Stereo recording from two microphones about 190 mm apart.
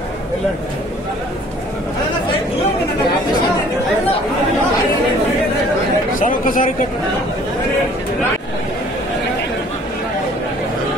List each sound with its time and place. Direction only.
6.1 s speech: 45° left (ahead or behind)